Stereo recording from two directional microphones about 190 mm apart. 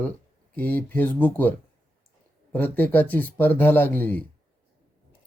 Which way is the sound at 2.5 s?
10° left (ahead or behind).